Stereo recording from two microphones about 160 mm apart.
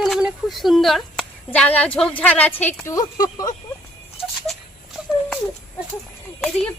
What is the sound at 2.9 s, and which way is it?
Speech, 25° left (ahead or behind).